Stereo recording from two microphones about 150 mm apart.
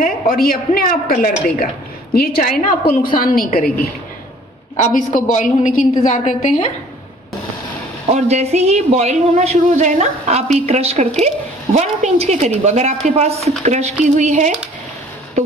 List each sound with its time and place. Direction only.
0.0 s a woman's voice: 75° left (ahead or behind)
4.7 s a woman's voice: 55° left (ahead or behind)
8.1 s speech: 45° right (ahead or behind)